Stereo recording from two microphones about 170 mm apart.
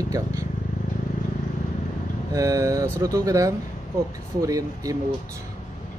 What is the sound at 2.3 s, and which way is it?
Speech, 20° right (ahead or behind).